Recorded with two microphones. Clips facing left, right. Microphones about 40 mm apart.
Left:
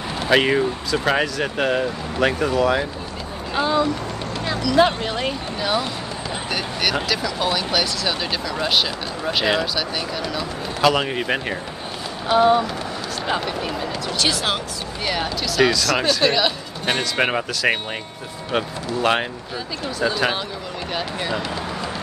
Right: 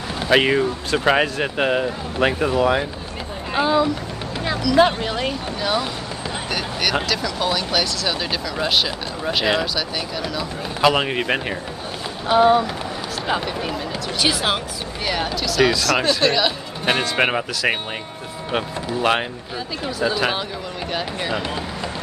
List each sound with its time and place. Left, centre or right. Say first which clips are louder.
0.2 s speech: right 1 dB; centre
0.9 s speech: right 3 dB; centre
6.5 s a sound: right 1 dB; centre
7.1 s speech: even; centre
10.8 s speech: right 1 dB; centre
15.4 s speech: even; centre
18.9 s speech: right 1 dB; centre